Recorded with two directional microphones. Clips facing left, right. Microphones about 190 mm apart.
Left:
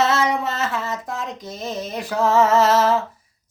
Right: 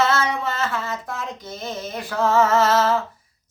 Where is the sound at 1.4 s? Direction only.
Centre (ahead or behind).